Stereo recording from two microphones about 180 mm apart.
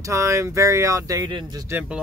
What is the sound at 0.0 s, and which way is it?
Speech, 15° right (ahead or behind).